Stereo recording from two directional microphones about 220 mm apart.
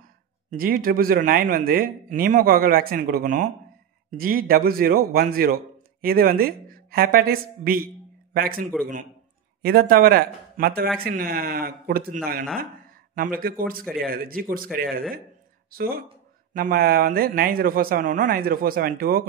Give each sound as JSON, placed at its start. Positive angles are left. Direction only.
{"t": 0.5, "sound": "a man's voice", "side_deg": -40}